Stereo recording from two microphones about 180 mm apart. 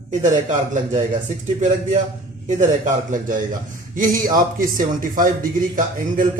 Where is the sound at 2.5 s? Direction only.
45° right (ahead or behind).